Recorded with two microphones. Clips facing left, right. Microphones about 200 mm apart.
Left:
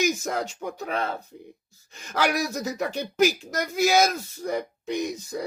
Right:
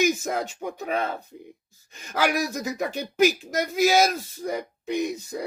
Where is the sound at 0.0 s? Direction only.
55° right (ahead or behind).